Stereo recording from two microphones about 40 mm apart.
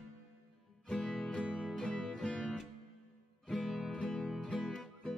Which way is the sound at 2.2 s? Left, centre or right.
Left.